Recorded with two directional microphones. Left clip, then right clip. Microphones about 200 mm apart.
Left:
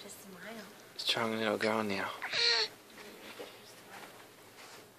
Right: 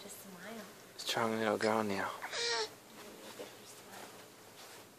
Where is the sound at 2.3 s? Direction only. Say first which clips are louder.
Left 10 dB; 15° right (ahead or behind).